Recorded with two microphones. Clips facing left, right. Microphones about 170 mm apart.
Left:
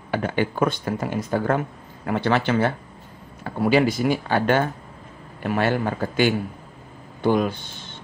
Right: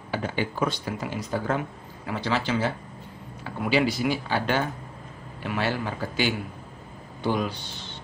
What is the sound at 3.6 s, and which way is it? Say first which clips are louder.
A man's voice: left 5 dB; 45° left (ahead or behind).